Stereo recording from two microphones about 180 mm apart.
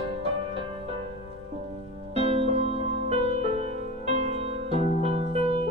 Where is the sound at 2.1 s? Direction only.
35° right (ahead or behind).